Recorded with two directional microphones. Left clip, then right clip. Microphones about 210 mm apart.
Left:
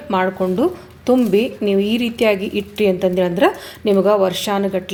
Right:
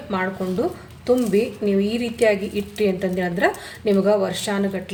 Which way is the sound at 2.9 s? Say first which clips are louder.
Left 7 dB; 30° left (ahead or behind).